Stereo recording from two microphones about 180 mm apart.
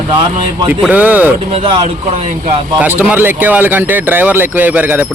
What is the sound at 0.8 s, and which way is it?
Speech, 10° right (ahead or behind).